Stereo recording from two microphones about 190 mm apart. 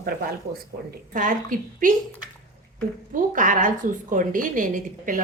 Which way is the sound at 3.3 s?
45° right (ahead or behind).